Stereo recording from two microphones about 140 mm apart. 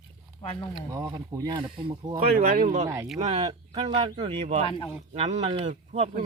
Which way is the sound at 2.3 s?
80° right.